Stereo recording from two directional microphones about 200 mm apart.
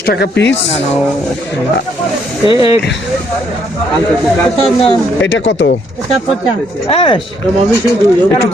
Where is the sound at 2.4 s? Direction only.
25° left (ahead or behind).